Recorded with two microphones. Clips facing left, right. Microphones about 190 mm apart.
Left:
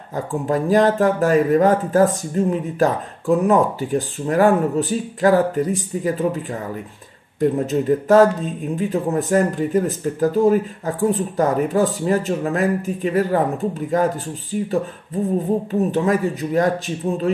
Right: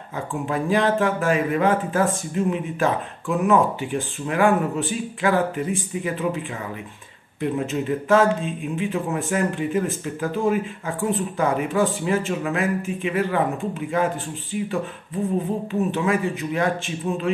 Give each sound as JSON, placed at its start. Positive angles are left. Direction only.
{"t": 0.1, "sound": "a man's voice", "side_deg": 40}